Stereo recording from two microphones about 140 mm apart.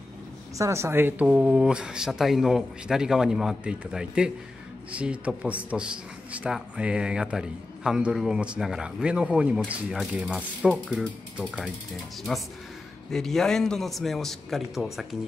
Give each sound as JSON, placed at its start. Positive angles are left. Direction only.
{"t": 0.6, "sound": "a man's voice", "side_deg": -20}